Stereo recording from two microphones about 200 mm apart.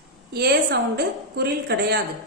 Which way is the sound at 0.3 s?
50° right (ahead or behind).